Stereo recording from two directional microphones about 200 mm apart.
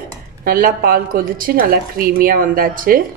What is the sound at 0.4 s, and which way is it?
A woman's voice, 45° right (ahead or behind).